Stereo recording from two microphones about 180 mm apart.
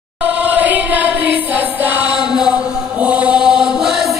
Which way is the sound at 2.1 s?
5° right (ahead or behind).